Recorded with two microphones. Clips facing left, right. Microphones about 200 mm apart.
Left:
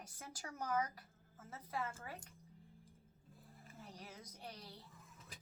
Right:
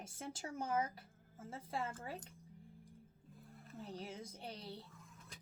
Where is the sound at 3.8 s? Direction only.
25° right (ahead or behind).